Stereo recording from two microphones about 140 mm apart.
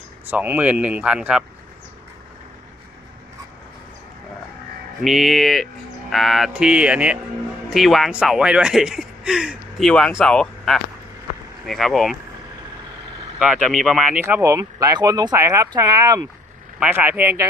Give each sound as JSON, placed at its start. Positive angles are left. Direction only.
{"t": 0.3, "sound": "speech", "side_deg": -15}
{"t": 5.0, "sound": "speech", "side_deg": 0}
{"t": 13.6, "sound": "speech", "side_deg": 0}
{"t": 14.2, "sound": "speech", "side_deg": -20}
{"t": 16.8, "sound": "speech", "side_deg": -10}